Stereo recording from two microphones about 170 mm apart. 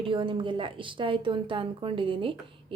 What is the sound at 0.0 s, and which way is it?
A woman's voice, 30° right (ahead or behind).